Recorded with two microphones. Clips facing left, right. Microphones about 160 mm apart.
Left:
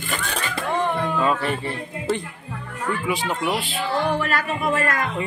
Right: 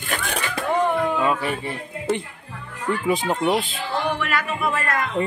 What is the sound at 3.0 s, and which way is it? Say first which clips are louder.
Music: right 5 dB; 35° right (ahead or behind).